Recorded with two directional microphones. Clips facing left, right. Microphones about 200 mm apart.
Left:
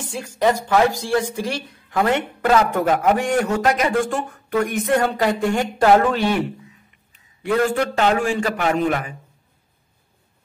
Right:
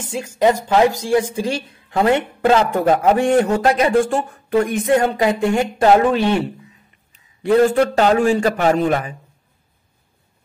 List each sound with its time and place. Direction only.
0.7 s speech: 15° right (ahead or behind)
7.4 s a man's voice: 35° right (ahead or behind)